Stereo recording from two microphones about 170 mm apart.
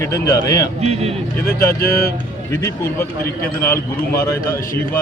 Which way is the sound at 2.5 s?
15° left (ahead or behind).